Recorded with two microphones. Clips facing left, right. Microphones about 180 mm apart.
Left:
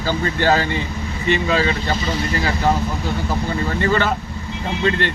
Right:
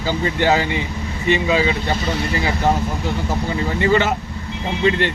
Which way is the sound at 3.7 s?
15° right (ahead or behind).